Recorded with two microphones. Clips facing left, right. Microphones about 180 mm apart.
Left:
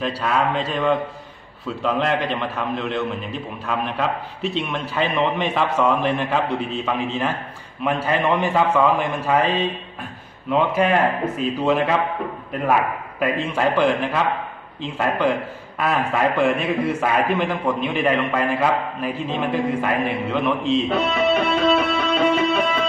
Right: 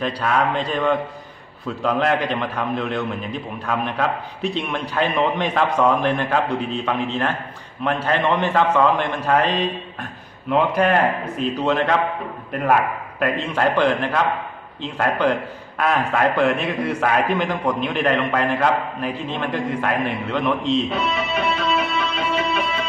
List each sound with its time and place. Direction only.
0.0 s a man's voice: centre (ahead or behind)
10.5 s a man's voice: 5° left (ahead or behind)
13.2 s a man's voice: 5° left (ahead or behind)
20.9 s music: 55° left (ahead or behind)